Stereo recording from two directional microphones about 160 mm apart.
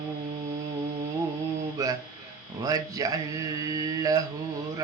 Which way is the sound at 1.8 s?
20° right (ahead or behind).